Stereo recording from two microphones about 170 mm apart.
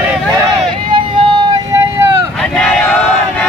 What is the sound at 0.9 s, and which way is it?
Vehicle, 25° right (ahead or behind).